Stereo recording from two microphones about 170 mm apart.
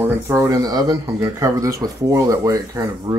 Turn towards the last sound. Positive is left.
turn(degrees=-20)  # may be behind; listen again after turning